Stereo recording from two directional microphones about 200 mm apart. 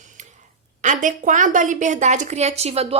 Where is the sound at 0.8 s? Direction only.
40° right (ahead or behind).